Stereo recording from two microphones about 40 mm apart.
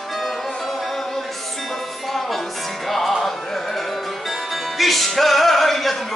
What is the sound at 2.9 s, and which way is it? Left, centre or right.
Music, centre.